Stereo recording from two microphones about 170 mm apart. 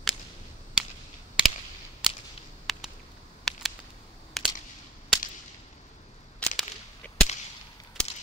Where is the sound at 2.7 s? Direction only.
Centre (ahead or behind).